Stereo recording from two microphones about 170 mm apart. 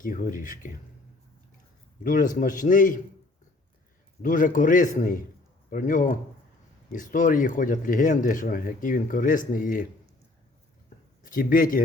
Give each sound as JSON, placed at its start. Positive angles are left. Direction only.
{"t": 0.0, "sound": "speech", "side_deg": 55}
{"t": 2.0, "sound": "speech", "side_deg": 50}
{"t": 4.2, "sound": "speech", "side_deg": 50}
{"t": 10.8, "sound": "a sound", "side_deg": 50}